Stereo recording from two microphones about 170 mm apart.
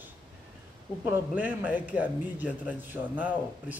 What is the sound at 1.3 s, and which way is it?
Speech, 10° right (ahead or behind).